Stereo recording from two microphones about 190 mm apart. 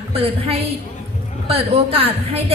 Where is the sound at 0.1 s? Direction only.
30° right (ahead or behind).